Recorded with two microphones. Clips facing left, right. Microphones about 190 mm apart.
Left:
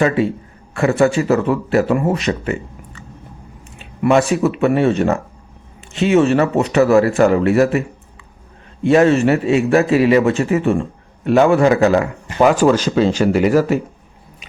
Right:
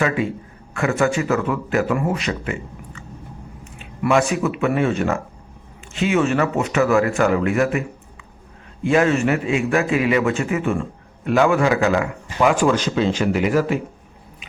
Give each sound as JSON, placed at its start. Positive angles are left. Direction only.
{"t": 0.7, "sound": "a man's voice", "side_deg": 35}
{"t": 4.0, "sound": "a man's voice", "side_deg": 35}
{"t": 6.2, "sound": "a man's voice", "side_deg": 35}
{"t": 8.9, "sound": "a man's voice", "side_deg": 35}